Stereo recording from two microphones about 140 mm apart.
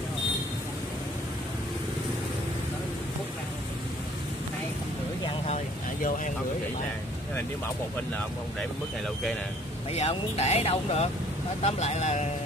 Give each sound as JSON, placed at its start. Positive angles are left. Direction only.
{"t": 6.0, "sound": "speech", "side_deg": 70}
{"t": 8.5, "sound": "speech", "side_deg": 5}
{"t": 9.9, "sound": "speech", "side_deg": 50}